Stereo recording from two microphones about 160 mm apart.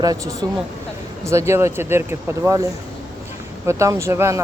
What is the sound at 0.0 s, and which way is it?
Speech, 20° right (ahead or behind).